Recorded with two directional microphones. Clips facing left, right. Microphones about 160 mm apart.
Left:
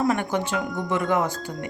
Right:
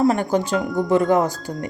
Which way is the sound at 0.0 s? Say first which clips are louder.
Right 5 dB; 35° right (ahead or behind).